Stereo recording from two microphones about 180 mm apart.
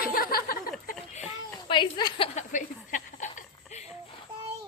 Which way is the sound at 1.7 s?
25° left (ahead or behind).